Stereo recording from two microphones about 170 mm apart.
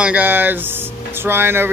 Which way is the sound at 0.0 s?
10° right (ahead or behind).